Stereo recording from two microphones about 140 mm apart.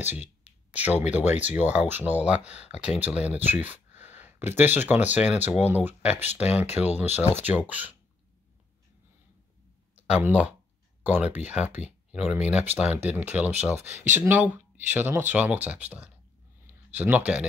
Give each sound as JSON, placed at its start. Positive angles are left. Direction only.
{"t": 0.0, "sound": "speech", "side_deg": -15}
{"t": 2.5, "sound": "speech", "side_deg": 50}
{"t": 2.8, "sound": "speech", "side_deg": -10}
{"t": 10.1, "sound": "speech", "side_deg": -10}